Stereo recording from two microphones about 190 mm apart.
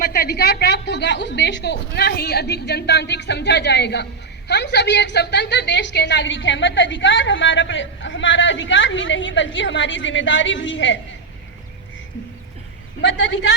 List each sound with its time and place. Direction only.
0.0 s a woman's voice: 50° left (ahead or behind); by 10.9 s 75° left (ahead or behind)
13.0 s a woman's voice: 75° left (ahead or behind)